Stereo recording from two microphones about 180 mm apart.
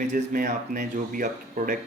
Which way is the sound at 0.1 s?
50° right (ahead or behind).